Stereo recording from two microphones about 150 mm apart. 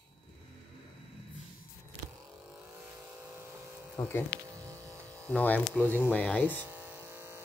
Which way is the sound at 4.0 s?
20° left (ahead or behind).